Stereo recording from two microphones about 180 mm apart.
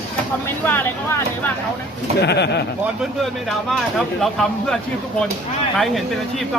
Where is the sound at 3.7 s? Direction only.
Centre (ahead or behind).